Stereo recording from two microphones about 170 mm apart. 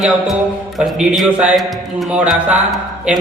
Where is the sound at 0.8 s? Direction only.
Centre (ahead or behind).